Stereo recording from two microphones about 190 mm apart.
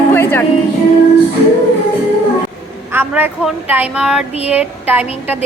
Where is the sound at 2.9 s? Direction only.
10° right (ahead or behind).